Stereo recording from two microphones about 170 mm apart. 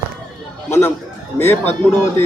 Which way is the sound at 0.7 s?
15° left (ahead or behind).